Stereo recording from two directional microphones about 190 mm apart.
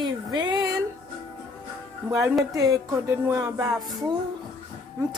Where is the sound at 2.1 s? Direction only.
15° right (ahead or behind).